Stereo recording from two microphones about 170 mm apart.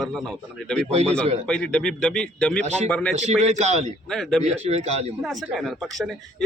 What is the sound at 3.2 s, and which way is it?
Speech, 40° right (ahead or behind).